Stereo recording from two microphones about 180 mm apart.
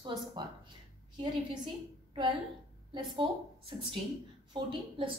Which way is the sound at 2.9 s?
25° right (ahead or behind).